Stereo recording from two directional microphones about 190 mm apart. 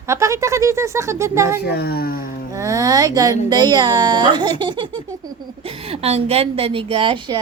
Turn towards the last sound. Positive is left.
turn(degrees=-25)  # may be behind; listen again after turning